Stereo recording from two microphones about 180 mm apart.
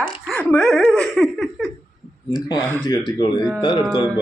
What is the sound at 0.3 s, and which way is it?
Speech, 5° left (ahead or behind).